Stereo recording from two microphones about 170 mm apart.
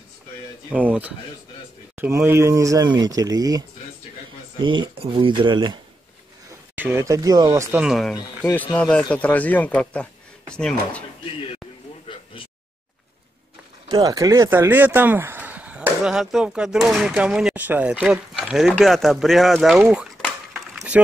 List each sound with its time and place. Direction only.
0.7 s speech: 10° right (ahead or behind); by 5.8 s 25° right (ahead or behind)
6.7 s speech: 10° right (ahead or behind)
7.8 s speech: centre (ahead or behind)
13.8 s speech: 20° right (ahead or behind); by 20.1 s 5° right (ahead or behind)
20.5 s a sound: 5° right (ahead or behind)